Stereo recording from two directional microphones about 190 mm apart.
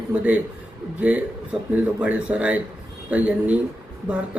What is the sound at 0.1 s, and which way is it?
Speech, 5° right (ahead or behind).